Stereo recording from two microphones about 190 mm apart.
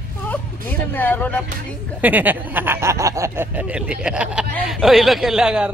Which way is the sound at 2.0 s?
10° right (ahead or behind).